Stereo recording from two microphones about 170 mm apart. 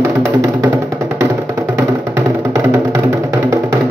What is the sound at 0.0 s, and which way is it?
Music, 15° right (ahead or behind).